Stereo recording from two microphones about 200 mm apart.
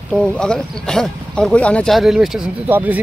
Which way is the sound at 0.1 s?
5° left (ahead or behind).